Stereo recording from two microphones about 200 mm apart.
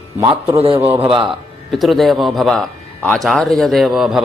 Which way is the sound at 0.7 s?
10° right (ahead or behind).